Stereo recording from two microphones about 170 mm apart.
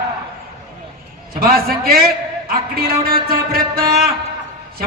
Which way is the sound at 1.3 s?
60° right (ahead or behind).